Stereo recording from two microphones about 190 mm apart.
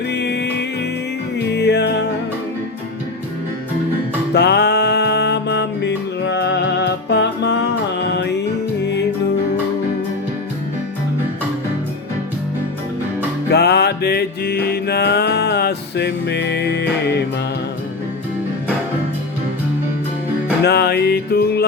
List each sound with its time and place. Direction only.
0.1 s music: 65° left (ahead or behind)
4.4 s music: 60° left (ahead or behind)
13.5 s music: 60° left (ahead or behind)
20.7 s music: 60° left (ahead or behind)